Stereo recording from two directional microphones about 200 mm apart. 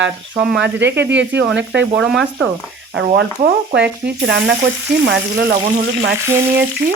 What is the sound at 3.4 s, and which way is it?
Speech, 55° right (ahead or behind).